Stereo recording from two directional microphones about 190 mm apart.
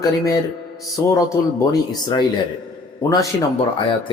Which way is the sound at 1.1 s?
20° left (ahead or behind).